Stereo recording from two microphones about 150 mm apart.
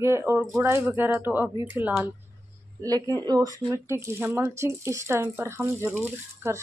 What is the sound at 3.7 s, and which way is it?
Speech, 15° right (ahead or behind).